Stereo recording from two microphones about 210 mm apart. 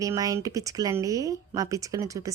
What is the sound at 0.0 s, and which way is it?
Speech, 15° right (ahead or behind).